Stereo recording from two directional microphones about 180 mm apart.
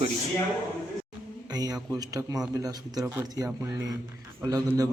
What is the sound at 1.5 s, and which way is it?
A man's voice, 20° right (ahead or behind).